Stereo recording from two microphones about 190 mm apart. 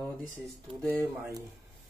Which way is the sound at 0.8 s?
10° right (ahead or behind).